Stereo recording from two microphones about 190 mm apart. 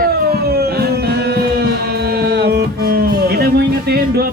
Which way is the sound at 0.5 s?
55° right (ahead or behind).